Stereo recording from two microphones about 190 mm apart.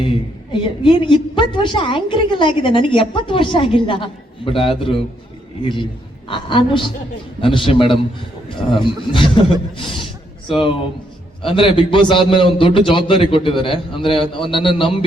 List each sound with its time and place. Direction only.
0.6 s a woman's voice: 25° left (ahead or behind)